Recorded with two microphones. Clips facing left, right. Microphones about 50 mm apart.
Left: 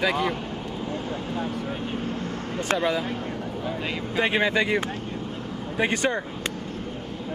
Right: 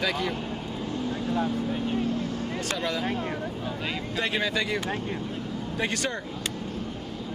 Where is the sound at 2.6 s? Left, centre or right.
Left.